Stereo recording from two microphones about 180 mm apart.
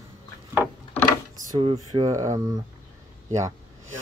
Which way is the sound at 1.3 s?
30° right (ahead or behind).